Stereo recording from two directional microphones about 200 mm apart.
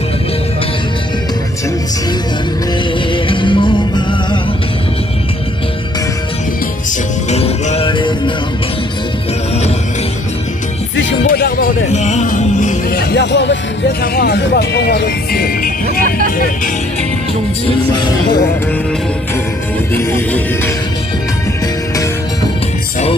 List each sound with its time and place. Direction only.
3.1 s music: 25° left (ahead or behind)
7.2 s music: 30° left (ahead or behind)
11.2 s music: 50° left (ahead or behind)
17.9 s speech: 20° left (ahead or behind)
19.9 s music: 10° left (ahead or behind)